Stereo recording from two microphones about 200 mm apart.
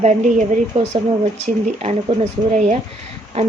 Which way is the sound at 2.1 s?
20° right (ahead or behind).